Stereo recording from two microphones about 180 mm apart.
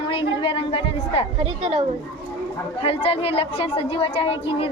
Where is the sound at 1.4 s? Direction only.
35° right (ahead or behind).